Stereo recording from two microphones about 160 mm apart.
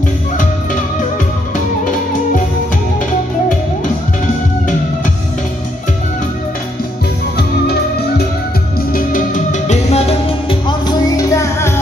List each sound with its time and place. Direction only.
8.9 s music: 55° left (ahead or behind); by 11.7 s 25° left (ahead or behind)